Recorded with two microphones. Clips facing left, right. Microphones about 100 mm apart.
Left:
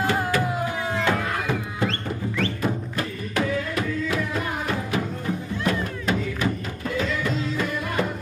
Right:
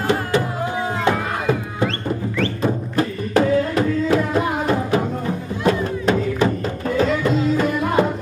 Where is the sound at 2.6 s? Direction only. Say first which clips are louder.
Right 6 dB; 30° right (ahead or behind).